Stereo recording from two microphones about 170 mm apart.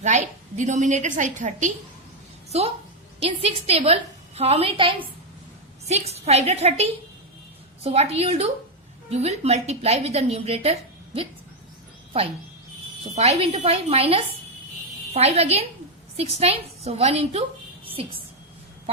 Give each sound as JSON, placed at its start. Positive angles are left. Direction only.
{"t": 0.0, "sound": "a woman's voice", "side_deg": -45}
{"t": 6.1, "sound": "a woman's voice", "side_deg": -40}
{"t": 13.1, "sound": "a woman's voice", "side_deg": -40}